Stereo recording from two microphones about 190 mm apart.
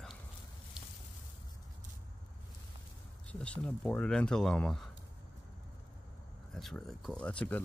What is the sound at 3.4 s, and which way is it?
Speech, 5° left (ahead or behind).